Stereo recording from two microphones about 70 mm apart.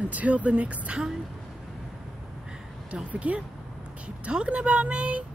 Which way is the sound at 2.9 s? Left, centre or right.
Centre.